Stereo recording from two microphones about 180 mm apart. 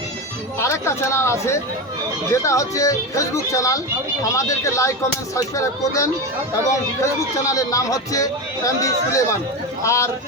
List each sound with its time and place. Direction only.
0.6 s a man's voice: 15° left (ahead or behind)